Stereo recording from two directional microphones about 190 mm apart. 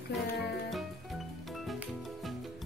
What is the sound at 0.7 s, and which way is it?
Music, centre (ahead or behind).